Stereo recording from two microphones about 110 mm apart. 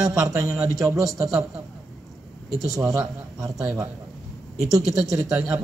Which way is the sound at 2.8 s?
30° right (ahead or behind).